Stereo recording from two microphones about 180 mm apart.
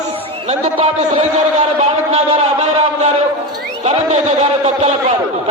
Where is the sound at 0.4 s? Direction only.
35° right (ahead or behind).